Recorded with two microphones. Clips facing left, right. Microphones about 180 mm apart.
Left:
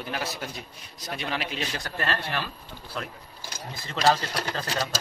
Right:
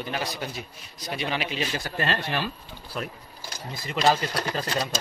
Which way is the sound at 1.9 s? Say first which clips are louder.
Right 2 dB; 20° right (ahead or behind).